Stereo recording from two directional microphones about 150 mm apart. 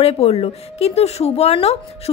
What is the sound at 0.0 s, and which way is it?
A woman's voice, 40° left (ahead or behind).